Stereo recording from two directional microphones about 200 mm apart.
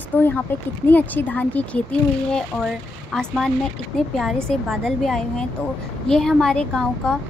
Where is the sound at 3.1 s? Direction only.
5° left (ahead or behind).